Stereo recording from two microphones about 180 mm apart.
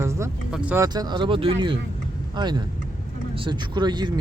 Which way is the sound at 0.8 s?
20° right (ahead or behind).